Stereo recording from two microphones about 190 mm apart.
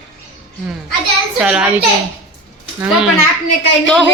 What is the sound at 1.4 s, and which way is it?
Speech, 5° right (ahead or behind).